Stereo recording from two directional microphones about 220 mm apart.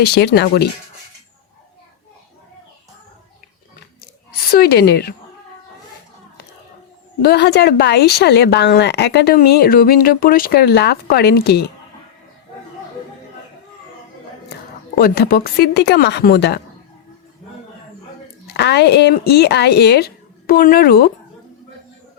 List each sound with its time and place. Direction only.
0.0 s speech: 50° left (ahead or behind)
4.5 s speech: 45° left (ahead or behind)
7.2 s speech: 45° left (ahead or behind)
14.9 s speech: 45° left (ahead or behind)
18.5 s speech: 50° left (ahead or behind)